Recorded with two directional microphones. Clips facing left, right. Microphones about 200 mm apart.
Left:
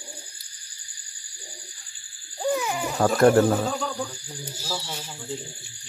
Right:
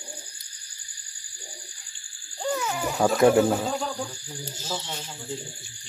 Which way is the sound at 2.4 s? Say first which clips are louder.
Left 3 dB; 15° left (ahead or behind).